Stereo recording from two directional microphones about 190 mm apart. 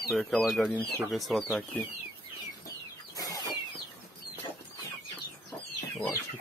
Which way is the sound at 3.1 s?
20° left (ahead or behind).